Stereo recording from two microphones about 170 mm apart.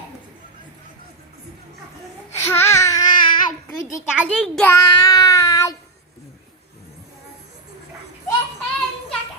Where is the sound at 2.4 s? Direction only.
15° left (ahead or behind).